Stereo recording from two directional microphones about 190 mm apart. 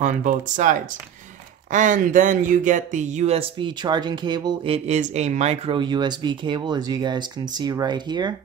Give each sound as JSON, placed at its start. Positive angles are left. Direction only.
{"t": 0.0, "sound": "speech", "side_deg": -40}